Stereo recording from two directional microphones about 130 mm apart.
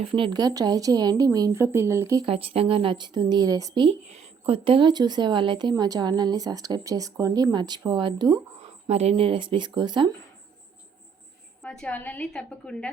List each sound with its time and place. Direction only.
0.0 s speech: 40° right (ahead or behind)
1.6 s speech: 15° right (ahead or behind)
2.2 s speech: 45° right (ahead or behind); by 3.8 s 30° right (ahead or behind)
3.8 s speech: 55° right (ahead or behind); by 8.4 s 35° right (ahead or behind)
8.9 s speech: 55° right (ahead or behind); by 10.1 s 35° right (ahead or behind)
11.6 s a woman's voice: 10° left (ahead or behind)